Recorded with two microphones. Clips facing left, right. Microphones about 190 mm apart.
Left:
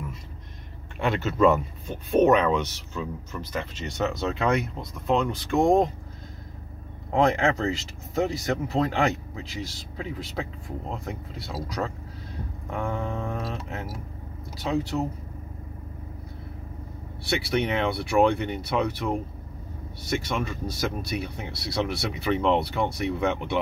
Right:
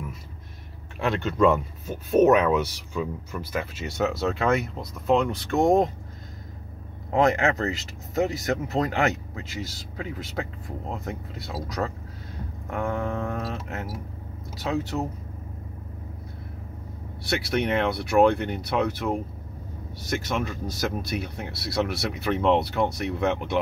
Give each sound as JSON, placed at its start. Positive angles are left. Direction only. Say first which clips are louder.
{"t": 0.9, "sound": "speech", "louder": "even", "side_deg": 0}
{"t": 7.1, "sound": "speech", "louder": "right 1 dB", "side_deg": -5}
{"t": 12.6, "sound": "a sound", "louder": "right 2 dB", "side_deg": 0}
{"t": 14.6, "sound": "speech", "louder": "left 1 dB", "side_deg": 0}
{"t": 17.3, "sound": "speech", "louder": "right 1 dB", "side_deg": 0}